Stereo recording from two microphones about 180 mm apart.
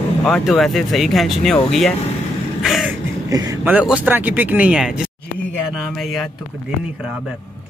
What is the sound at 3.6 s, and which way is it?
Speech, 5° right (ahead or behind).